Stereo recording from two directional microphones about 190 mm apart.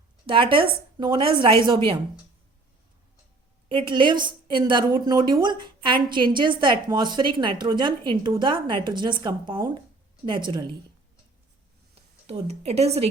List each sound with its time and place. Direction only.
0.3 s a woman's voice: 25° right (ahead or behind)
3.7 s a woman's voice: 25° right (ahead or behind)
12.2 s speech: 35° right (ahead or behind)